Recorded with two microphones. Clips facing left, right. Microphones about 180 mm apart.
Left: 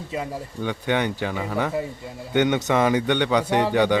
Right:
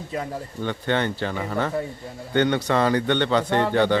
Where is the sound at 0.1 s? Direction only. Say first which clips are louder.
Even; 10° left (ahead or behind).